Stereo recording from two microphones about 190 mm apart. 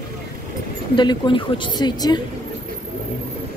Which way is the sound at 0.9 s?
25° left (ahead or behind).